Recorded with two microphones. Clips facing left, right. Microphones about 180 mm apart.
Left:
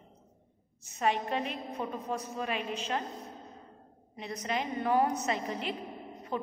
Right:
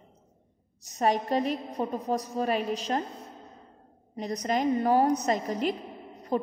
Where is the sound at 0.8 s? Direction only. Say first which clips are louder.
Right 4 dB; 40° right (ahead or behind).